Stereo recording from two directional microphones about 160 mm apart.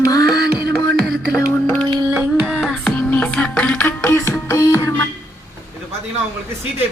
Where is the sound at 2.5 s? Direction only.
5° left (ahead or behind); by 4.8 s 20° left (ahead or behind).